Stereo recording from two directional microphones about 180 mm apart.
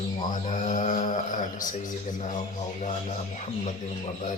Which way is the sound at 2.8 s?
40° left (ahead or behind).